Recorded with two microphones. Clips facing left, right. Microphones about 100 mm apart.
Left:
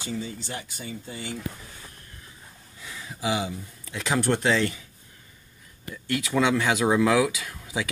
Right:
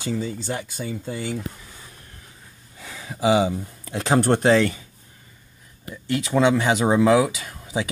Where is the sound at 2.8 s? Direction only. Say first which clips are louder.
Right 8 dB; 85° right.